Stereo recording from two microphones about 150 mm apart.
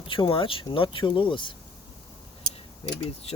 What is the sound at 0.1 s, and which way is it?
Speech, 35° left (ahead or behind).